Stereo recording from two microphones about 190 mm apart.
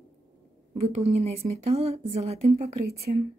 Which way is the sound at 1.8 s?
35° right (ahead or behind).